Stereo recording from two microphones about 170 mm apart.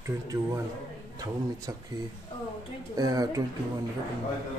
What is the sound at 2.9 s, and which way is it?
Speech, 20° right (ahead or behind).